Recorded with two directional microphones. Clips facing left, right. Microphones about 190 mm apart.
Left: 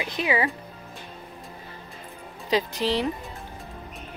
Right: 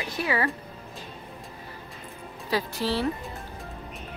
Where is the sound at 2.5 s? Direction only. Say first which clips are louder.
Left 3 dB; 20° left (ahead or behind).